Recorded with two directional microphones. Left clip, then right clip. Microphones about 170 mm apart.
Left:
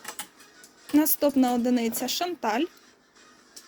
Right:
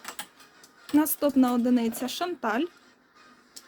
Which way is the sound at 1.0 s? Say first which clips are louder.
Left 1 dB; 25° right (ahead or behind).